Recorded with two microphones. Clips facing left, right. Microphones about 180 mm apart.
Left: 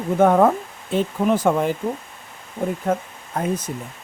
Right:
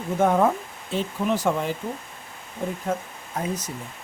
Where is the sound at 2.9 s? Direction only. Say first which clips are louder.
Left 5 dB; 55° left (ahead or behind).